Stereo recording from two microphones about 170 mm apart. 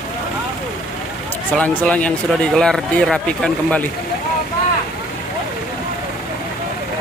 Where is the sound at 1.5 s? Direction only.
5° left (ahead or behind).